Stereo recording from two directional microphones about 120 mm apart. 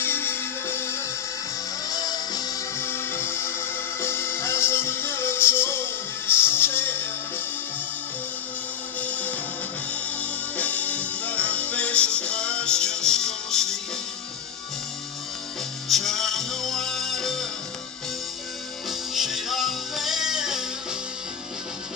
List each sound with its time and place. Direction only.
0.0 s music: 20° left (ahead or behind)
1.9 s music: 30° left (ahead or behind)
2.8 s music: 20° left (ahead or behind)
9.0 s music: 10° left (ahead or behind)
15.9 s music: centre (ahead or behind)
18.9 s music: 5° right (ahead or behind)